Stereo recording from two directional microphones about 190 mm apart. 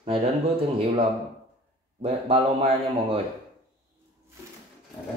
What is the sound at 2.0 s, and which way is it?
Speech, 30° right (ahead or behind).